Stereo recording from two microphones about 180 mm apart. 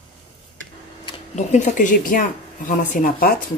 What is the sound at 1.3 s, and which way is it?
Speech, 40° left (ahead or behind).